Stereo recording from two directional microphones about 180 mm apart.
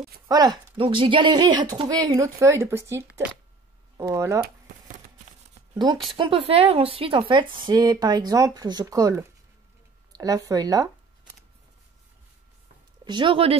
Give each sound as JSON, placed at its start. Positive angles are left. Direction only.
{"t": 0.3, "sound": "speech", "side_deg": -20}
{"t": 6.1, "sound": "speech", "side_deg": -30}
{"t": 13.0, "sound": "speech", "side_deg": -25}